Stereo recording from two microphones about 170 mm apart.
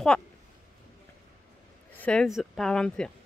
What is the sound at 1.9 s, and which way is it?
Speech, 5° left (ahead or behind).